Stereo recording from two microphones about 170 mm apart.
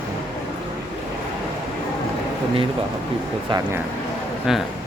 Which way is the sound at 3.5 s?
30° right (ahead or behind).